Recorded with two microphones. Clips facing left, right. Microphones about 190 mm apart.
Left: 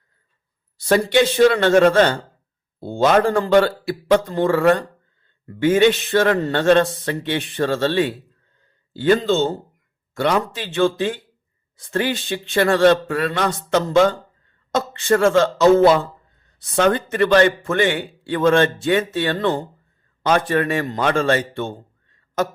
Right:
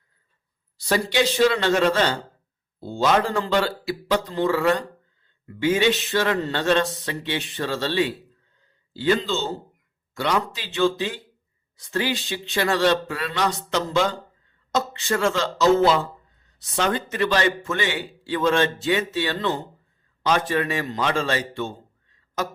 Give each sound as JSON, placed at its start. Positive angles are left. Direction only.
{"t": 0.8, "sound": "a man's voice", "side_deg": 55}